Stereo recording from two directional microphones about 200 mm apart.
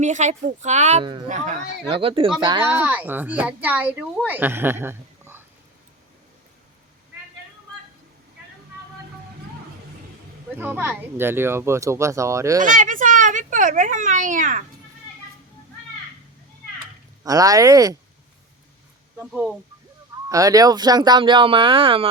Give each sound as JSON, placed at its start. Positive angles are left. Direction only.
{"t": 0.0, "sound": "speech", "side_deg": -35}
{"t": 1.0, "sound": "speech", "side_deg": -25}
{"t": 1.3, "sound": "speech", "side_deg": -40}
{"t": 2.0, "sound": "speech", "side_deg": -25}
{"t": 2.6, "sound": "speech", "side_deg": -10}
{"t": 10.6, "sound": "speech", "side_deg": -10}
{"t": 12.6, "sound": "a child's voice", "side_deg": -40}
{"t": 17.2, "sound": "speech", "side_deg": -15}
{"t": 19.2, "sound": "speech", "side_deg": -5}
{"t": 20.3, "sound": "speech", "side_deg": -15}